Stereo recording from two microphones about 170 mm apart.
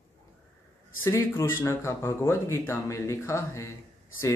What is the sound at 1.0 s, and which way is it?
Speech, 15° left (ahead or behind).